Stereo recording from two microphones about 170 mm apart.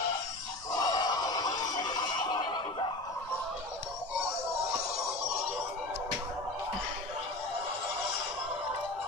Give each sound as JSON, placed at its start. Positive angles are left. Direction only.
{"t": 0.7, "sound": "music", "side_deg": 25}